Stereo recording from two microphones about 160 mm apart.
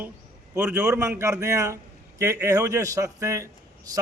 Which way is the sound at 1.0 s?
20° right (ahead or behind).